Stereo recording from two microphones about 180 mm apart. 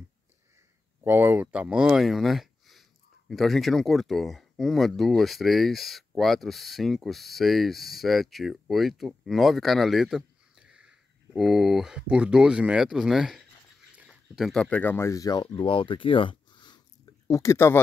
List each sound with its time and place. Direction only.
1.0 s speech: 10° right (ahead or behind); by 17.7 s 15° left (ahead or behind)